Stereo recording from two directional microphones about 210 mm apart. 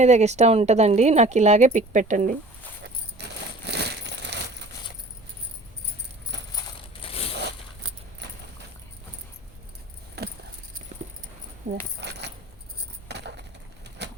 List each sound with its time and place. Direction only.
0.0 s speech: 35° right (ahead or behind)
3.2 s a sound: 55° right (ahead or behind)
7.0 s crushing: 25° left (ahead or behind)
8.2 s vehicle: 55° right (ahead or behind)
10.2 s keys jangling: 50° right (ahead or behind)
11.9 s keys jangling: 55° right (ahead or behind)
13.1 s a sound: 55° right (ahead or behind)